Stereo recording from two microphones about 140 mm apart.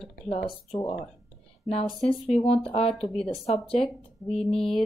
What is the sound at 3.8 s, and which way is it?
Speech, 5° left (ahead or behind).